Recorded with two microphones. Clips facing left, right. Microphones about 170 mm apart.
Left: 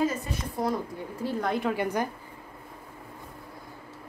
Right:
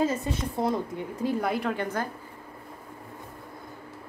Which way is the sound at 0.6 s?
25° right (ahead or behind).